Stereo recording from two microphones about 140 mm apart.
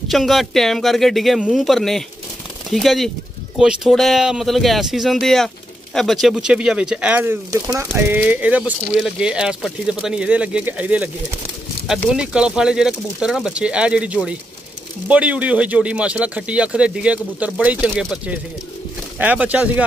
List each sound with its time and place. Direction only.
0.1 s speech: centre (ahead or behind)
12.1 s speech: 5° right (ahead or behind)